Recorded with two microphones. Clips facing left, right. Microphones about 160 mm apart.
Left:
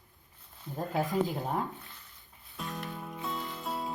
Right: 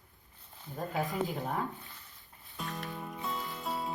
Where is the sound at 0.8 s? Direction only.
Centre (ahead or behind).